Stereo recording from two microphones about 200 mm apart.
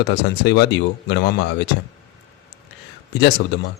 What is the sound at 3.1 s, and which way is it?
Speech, 55° left (ahead or behind).